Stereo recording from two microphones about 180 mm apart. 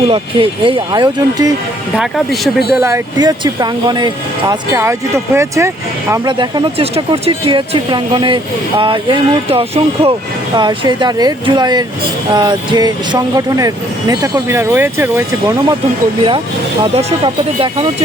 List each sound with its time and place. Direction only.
0.1 s speech: 30° right (ahead or behind)
2.0 s speech: centre (ahead or behind)
2.8 s speech: 20° right (ahead or behind)
16.8 s speech: 35° right (ahead or behind)